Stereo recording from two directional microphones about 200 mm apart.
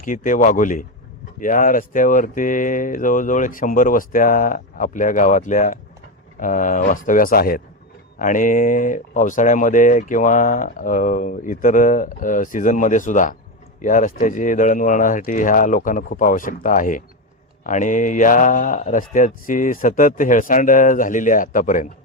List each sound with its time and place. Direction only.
0.0 s speech: 40° left (ahead or behind)